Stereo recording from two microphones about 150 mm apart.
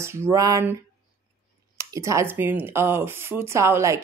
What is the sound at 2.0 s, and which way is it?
Speech, 20° right (ahead or behind).